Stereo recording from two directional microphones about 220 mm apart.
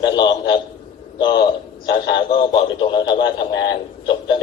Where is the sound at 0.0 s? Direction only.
20° left (ahead or behind).